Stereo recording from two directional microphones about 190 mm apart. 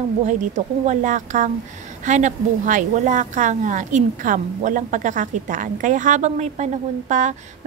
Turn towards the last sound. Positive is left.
turn(degrees=-40)  # may be behind; listen again after turning